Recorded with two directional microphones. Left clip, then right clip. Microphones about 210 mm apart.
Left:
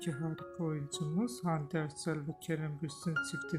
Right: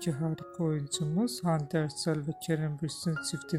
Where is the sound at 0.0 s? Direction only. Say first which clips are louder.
Right 5 dB; 25° right (ahead or behind).